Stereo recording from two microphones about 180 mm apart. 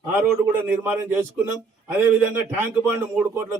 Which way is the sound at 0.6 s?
10° right (ahead or behind).